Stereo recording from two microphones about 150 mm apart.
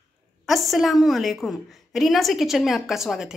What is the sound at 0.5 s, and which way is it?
A woman's voice, centre (ahead or behind).